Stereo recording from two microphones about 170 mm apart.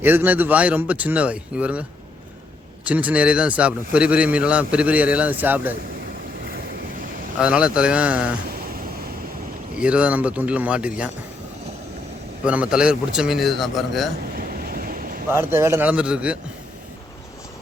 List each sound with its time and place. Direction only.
0.0 s a man's voice: 10° right (ahead or behind)
2.8 s a man's voice: 10° right (ahead or behind)
7.3 s a man's voice: 5° right (ahead or behind)
9.7 s a man's voice: 5° right (ahead or behind)
12.5 s a man's voice: 5° right (ahead or behind)
14.3 s ocean: 60° right (ahead or behind)
15.3 s a man's voice: 15° right (ahead or behind)